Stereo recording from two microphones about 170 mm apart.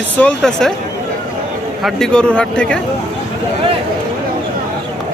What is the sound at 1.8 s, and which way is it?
Speech, 5° left (ahead or behind).